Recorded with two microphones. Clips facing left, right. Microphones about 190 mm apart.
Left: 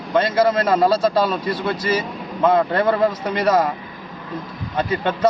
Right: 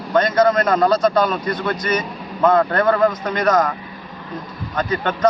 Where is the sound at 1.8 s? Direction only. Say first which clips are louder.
Even; 30° left (ahead or behind).